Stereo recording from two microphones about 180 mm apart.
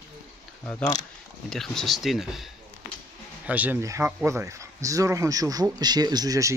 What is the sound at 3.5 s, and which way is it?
Speech, 10° right (ahead or behind).